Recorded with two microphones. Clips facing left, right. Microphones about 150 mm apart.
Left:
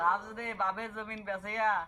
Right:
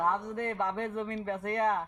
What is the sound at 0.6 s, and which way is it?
Speech, 45° right (ahead or behind).